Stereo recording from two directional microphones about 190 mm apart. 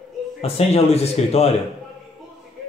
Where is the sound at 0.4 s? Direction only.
30° left (ahead or behind).